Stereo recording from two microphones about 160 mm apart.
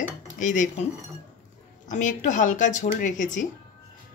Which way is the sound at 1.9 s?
50° left (ahead or behind).